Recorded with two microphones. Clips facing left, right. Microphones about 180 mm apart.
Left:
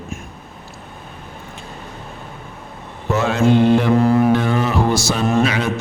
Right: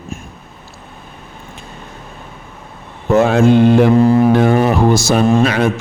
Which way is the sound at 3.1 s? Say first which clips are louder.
Right 5 dB; 55° right (ahead or behind).